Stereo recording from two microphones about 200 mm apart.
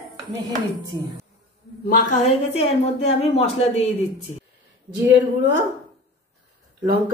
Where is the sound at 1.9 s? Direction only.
40° left (ahead or behind).